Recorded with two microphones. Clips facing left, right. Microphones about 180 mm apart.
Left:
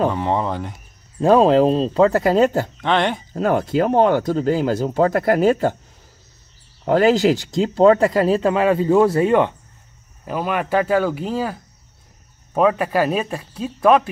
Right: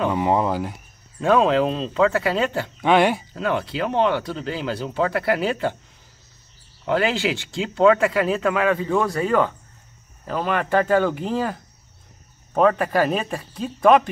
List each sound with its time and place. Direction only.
0.1 s speech: 5° right (ahead or behind)
1.2 s speech: 35° left (ahead or behind)
2.8 s speech: 10° right (ahead or behind)
3.3 s speech: 45° left (ahead or behind)
6.8 s speech: 40° left (ahead or behind); by 9.6 s 20° left (ahead or behind)
10.2 s speech: 10° left (ahead or behind)